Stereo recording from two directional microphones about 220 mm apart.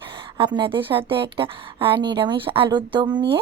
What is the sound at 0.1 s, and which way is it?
A woman's voice, 20° right (ahead or behind).